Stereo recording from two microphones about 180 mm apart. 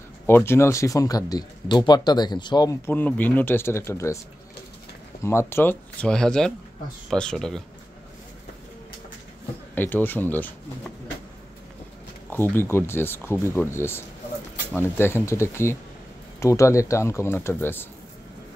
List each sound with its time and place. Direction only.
0.3 s speech: 15° left (ahead or behind)
2.9 s speech: 10° left (ahead or behind)
5.2 s speech: 15° left (ahead or behind)
9.8 s speech: 10° left (ahead or behind)
12.3 s speech: 10° left (ahead or behind)